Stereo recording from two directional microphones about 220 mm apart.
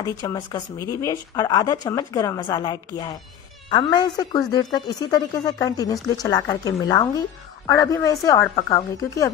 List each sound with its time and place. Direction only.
0.0 s a woman's voice: 15° left (ahead or behind)